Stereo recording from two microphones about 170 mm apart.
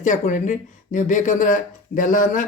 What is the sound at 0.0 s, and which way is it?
Speech, 50° left (ahead or behind).